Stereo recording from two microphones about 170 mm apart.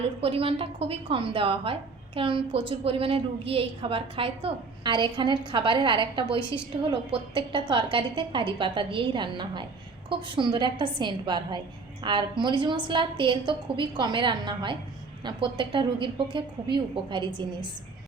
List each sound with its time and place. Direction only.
0.2 s a woman's voice: 35° right (ahead or behind)